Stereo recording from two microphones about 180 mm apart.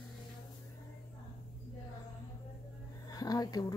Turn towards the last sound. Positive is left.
turn(degrees=20)  # may be behind; listen again after turning